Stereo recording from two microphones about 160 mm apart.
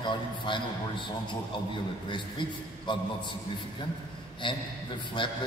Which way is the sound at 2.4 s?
30° left (ahead or behind).